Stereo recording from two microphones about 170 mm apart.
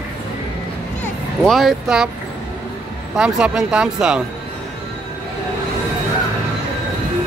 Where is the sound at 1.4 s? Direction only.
Centre (ahead or behind).